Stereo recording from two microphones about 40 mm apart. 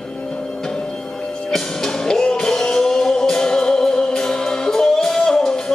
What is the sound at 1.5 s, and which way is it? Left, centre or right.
Music, centre.